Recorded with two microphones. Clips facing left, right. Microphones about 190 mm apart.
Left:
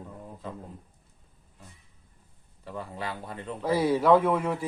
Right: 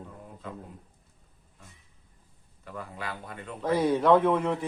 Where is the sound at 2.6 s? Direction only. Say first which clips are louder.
Left 3 dB; 30° left (ahead or behind).